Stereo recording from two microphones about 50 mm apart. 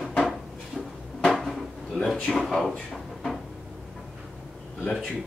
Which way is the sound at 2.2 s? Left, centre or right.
Centre.